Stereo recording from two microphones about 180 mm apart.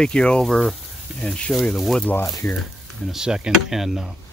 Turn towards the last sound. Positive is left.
turn(degrees=-5)  # may be behind; listen again after turning